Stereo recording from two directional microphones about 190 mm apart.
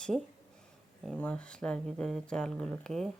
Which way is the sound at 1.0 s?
5° left (ahead or behind).